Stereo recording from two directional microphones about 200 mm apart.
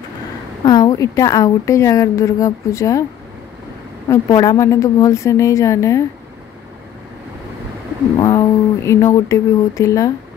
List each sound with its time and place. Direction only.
0.7 s a woman's voice: 20° left (ahead or behind)
4.1 s a woman's voice: 20° left (ahead or behind)
8.2 s a woman's voice: 20° left (ahead or behind)